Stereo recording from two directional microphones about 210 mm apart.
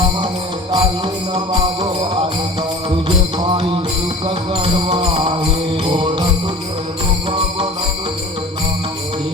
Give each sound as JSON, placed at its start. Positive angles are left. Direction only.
{"t": 0.7, "sound": "music", "side_deg": -25}
{"t": 2.9, "sound": "music", "side_deg": -25}